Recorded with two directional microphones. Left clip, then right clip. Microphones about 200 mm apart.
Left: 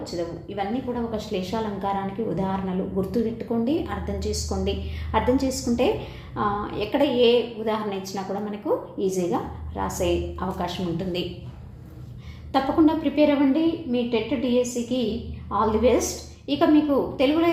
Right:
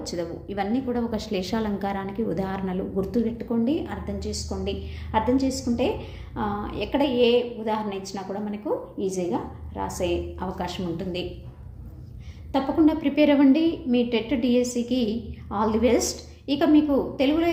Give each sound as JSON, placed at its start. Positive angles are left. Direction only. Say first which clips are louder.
{"t": 0.0, "sound": "a woman's voice", "louder": "left 1 dB", "side_deg": -25}
{"t": 12.5, "sound": "a woman's voice", "louder": "left 1 dB", "side_deg": -15}